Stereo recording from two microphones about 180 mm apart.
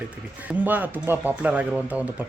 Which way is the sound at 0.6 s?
10° right (ahead or behind).